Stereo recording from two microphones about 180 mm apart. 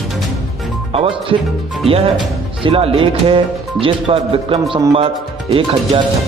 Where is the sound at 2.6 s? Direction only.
30° right (ahead or behind).